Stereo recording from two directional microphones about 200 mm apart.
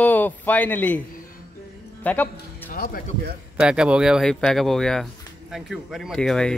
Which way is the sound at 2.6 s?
45° left (ahead or behind).